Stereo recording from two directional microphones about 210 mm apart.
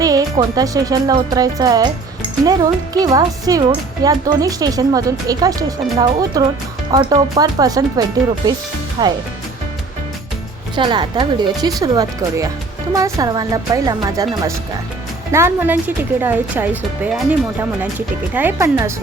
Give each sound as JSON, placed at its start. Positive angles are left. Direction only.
{"t": 0.0, "sound": "a woman's voice", "side_deg": -15}
{"t": 10.8, "sound": "a woman's voice", "side_deg": -20}
{"t": 18.3, "sound": "a woman's voice", "side_deg": -10}